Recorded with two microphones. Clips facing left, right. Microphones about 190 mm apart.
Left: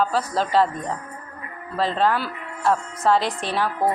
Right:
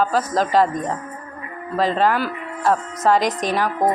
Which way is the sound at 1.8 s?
10° right (ahead or behind).